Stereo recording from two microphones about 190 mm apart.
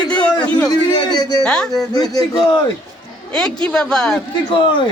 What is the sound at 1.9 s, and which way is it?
Speech, 20° left (ahead or behind).